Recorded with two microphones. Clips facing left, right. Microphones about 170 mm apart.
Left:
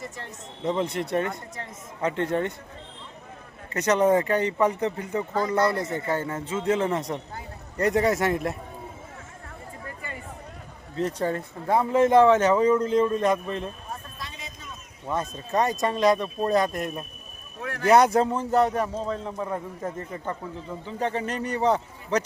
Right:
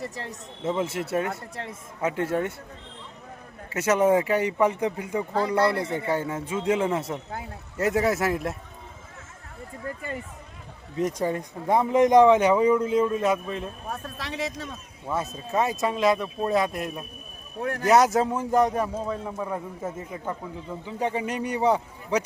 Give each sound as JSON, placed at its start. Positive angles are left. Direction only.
{"t": 0.6, "sound": "speech", "side_deg": -5}
{"t": 3.7, "sound": "speech", "side_deg": -5}
{"t": 10.9, "sound": "speech", "side_deg": -10}
{"t": 13.9, "sound": "speech", "side_deg": -85}
{"t": 15.1, "sound": "speech", "side_deg": -5}
{"t": 17.6, "sound": "speech", "side_deg": -45}
{"t": 17.8, "sound": "speech", "side_deg": 0}